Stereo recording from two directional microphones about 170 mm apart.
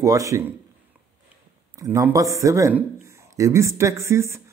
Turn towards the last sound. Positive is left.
turn(degrees=-15)  # may be behind; listen again after turning